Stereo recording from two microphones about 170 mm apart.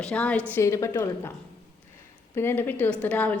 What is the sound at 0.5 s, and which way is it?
Speech, 15° left (ahead or behind).